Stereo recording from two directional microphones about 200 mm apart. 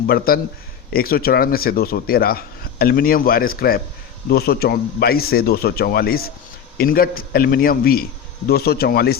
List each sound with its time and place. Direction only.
0.3 s speech: 50° left (ahead or behind)